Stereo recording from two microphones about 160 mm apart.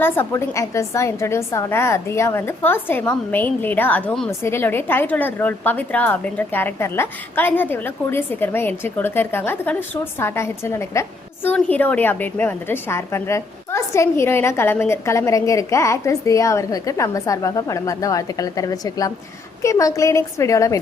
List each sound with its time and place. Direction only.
0.0 s a woman's voice: 15° left (ahead or behind)